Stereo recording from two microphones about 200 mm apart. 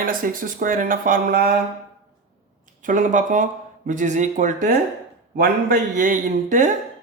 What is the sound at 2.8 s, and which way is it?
A man's voice, 40° right (ahead or behind).